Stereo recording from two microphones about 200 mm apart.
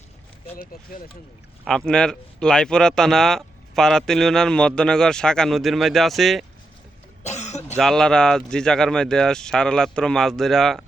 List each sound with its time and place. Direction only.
0.6 s speech: 45° left (ahead or behind)
1.6 s speech: 5° left (ahead or behind)
7.3 s cough: 35° left (ahead or behind)
7.8 s speech: centre (ahead or behind)